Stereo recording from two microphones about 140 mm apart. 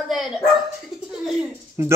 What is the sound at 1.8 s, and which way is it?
Speech, 20° right (ahead or behind).